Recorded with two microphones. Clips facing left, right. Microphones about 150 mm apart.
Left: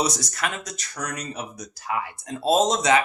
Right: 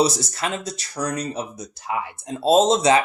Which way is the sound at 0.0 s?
30° right (ahead or behind).